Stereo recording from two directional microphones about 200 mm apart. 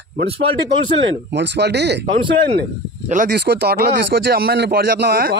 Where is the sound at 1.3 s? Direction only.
60° right (ahead or behind).